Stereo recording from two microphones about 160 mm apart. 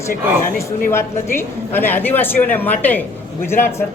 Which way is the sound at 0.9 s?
15° left (ahead or behind).